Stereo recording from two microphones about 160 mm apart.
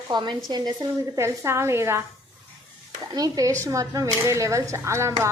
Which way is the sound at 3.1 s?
25° right (ahead or behind).